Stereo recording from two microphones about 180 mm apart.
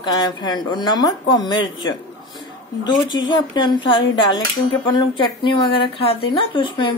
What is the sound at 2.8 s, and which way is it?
A woman's voice, 25° left (ahead or behind).